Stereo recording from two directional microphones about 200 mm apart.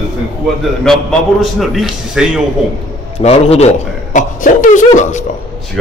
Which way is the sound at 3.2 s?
30° left (ahead or behind).